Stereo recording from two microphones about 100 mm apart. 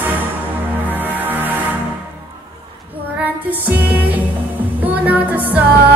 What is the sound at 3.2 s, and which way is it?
Music, 20° right (ahead or behind).